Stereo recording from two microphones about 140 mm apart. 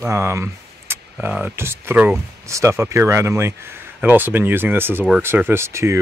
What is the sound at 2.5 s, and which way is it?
Speech, 20° right (ahead or behind).